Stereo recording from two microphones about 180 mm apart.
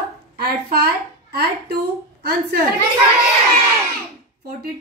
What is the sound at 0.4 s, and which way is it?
Speech, 60° right (ahead or behind).